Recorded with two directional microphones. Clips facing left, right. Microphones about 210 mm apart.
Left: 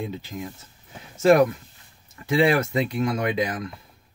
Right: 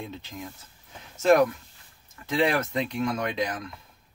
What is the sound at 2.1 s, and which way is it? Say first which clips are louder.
Speech: left 5 dB; 10° left (ahead or behind).